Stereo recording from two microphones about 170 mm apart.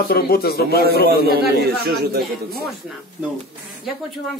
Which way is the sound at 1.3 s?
70° right (ahead or behind).